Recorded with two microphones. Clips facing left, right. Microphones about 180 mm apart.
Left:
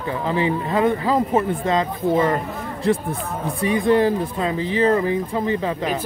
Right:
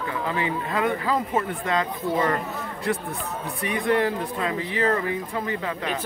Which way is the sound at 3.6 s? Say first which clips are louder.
Left 6 dB; 30° left (ahead or behind).